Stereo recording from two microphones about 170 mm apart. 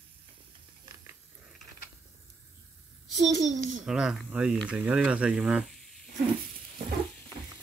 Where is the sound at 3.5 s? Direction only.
50° right (ahead or behind).